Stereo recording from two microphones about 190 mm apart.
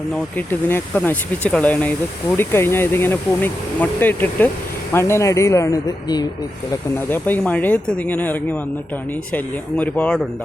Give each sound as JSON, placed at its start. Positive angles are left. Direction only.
{"t": 0.3, "sound": "speech", "side_deg": 10}
{"t": 7.1, "sound": "speech", "side_deg": 10}